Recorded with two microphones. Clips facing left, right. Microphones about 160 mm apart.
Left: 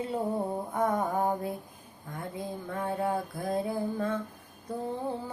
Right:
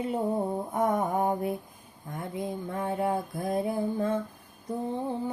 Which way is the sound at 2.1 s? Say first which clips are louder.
Right 3 dB; 20° right (ahead or behind).